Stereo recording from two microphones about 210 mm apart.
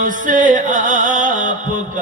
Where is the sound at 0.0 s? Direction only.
40° right (ahead or behind).